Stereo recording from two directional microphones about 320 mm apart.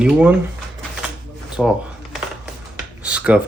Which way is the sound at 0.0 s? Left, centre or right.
Centre.